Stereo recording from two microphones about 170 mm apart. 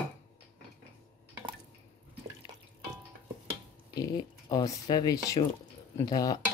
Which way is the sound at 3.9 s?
25° left (ahead or behind).